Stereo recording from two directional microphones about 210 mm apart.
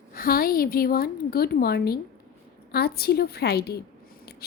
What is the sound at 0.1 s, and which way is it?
A woman's voice, 45° left (ahead or behind).